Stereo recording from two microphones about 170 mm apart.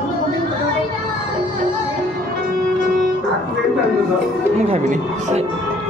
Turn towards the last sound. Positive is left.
turn(degrees=-40)  # may be behind; listen again after turning